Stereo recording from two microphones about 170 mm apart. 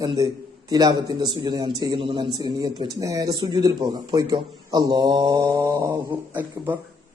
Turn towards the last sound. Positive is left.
turn(degrees=-10)  # may be behind; listen again after turning